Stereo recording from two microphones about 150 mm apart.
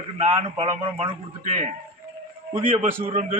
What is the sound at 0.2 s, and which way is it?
A man's voice, 40° right (ahead or behind).